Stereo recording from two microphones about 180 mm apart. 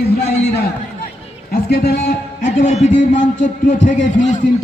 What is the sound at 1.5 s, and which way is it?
Speech, 60° left (ahead or behind).